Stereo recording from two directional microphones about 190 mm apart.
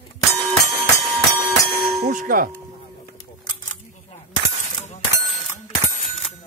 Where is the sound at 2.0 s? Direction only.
45° right (ahead or behind).